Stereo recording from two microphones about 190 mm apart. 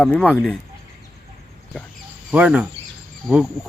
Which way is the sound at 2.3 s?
5° right (ahead or behind).